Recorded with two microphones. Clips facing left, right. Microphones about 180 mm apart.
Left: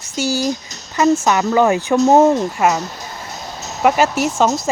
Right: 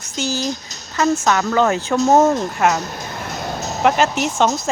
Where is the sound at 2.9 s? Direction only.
60° right (ahead or behind).